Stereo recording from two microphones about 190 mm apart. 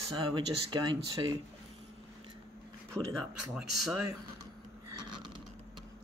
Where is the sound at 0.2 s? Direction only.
25° right (ahead or behind).